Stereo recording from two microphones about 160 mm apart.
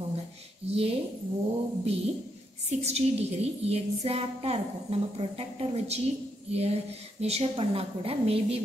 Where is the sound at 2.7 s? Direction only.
40° right (ahead or behind).